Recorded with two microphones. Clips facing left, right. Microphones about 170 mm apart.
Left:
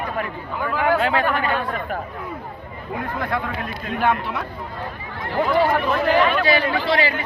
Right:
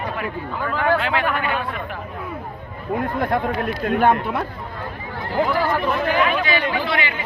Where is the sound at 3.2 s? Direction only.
45° right (ahead or behind).